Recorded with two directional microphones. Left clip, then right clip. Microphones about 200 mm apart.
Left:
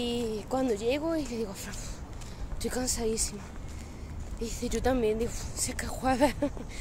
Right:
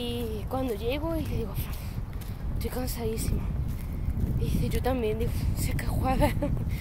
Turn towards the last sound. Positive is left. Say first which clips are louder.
# left 1 dB
turn(degrees=10)  # may be behind; listen again after turning